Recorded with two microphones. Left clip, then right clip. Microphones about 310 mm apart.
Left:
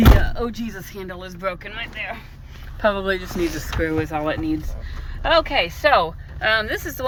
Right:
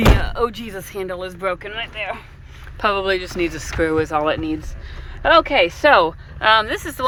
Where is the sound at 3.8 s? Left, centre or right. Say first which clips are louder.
Right 5 dB; centre.